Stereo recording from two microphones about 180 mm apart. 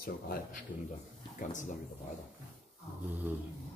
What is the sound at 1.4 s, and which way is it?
Speech, 45° left (ahead or behind).